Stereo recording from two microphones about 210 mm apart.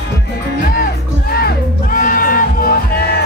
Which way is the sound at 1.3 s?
45° left (ahead or behind).